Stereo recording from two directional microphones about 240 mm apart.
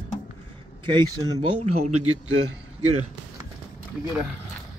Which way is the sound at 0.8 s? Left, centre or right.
Centre.